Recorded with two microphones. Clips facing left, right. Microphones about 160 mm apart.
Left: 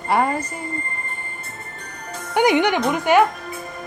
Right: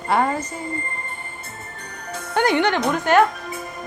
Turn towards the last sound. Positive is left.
turn(degrees=10)  # may be behind; listen again after turning